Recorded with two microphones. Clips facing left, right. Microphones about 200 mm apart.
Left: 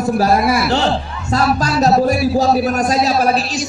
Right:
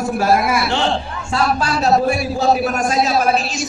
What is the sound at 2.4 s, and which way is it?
A man's voice, 35° left (ahead or behind).